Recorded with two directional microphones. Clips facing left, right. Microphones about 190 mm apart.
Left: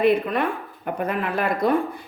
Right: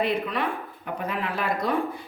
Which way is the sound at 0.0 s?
50° left (ahead or behind).